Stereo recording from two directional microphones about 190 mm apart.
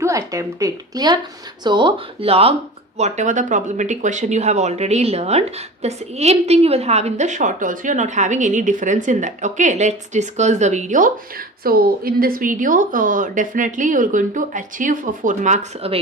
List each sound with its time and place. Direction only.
0.0 s speech: 15° right (ahead or behind); by 16.0 s 35° right (ahead or behind)